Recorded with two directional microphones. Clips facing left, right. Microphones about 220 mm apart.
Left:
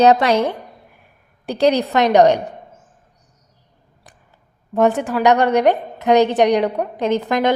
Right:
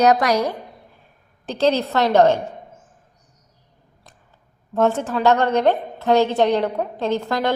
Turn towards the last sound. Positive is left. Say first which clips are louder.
# left 4 dB
turn(degrees=20)  # may be behind; listen again after turning